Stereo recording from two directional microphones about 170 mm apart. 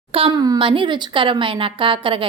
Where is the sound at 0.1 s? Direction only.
30° right (ahead or behind).